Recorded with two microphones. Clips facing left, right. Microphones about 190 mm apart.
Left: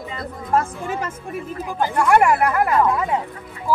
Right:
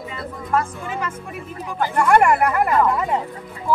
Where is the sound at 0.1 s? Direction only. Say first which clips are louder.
Left 2 dB; 40° left (ahead or behind).